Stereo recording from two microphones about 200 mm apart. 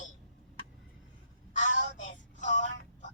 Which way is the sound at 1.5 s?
40° left (ahead or behind).